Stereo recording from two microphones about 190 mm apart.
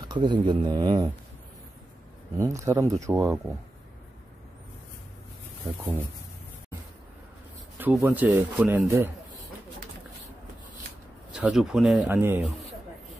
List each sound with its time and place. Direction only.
0.0 s speech: 25° right (ahead or behind)
2.3 s speech: 15° right (ahead or behind)
7.8 s speech: 10° right (ahead or behind)
11.3 s speech: centre (ahead or behind)